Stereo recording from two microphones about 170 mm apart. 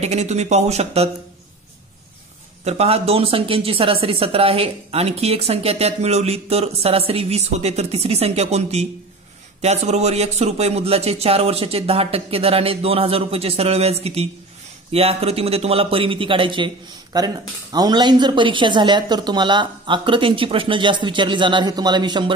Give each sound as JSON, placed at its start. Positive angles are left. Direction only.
{"t": 0.0, "sound": "speech", "side_deg": -40}
{"t": 2.6, "sound": "a man's voice", "side_deg": -35}